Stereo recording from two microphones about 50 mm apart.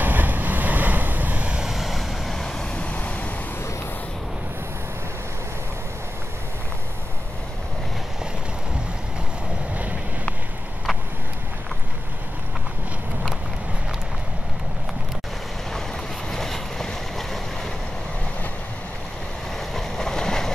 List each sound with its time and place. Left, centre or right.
0.0 s vehicle: right
1.7 s vehicle: centre
2.8 s waves: left
16.3 s boat: centre
19.7 s a sound: centre